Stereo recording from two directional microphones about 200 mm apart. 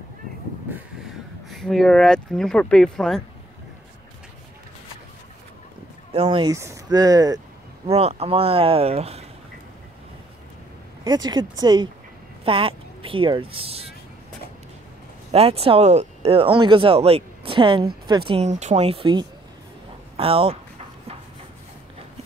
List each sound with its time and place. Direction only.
1.5 s speech: centre (ahead or behind)
6.1 s speech: 25° right (ahead or behind)
6.5 s speech: 15° right (ahead or behind)
7.8 s speech: 30° right (ahead or behind)
11.1 s speech: 20° right (ahead or behind)
15.3 s speech: 30° right (ahead or behind)